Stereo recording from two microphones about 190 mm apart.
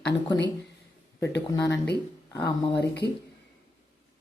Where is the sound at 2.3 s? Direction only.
20° left (ahead or behind).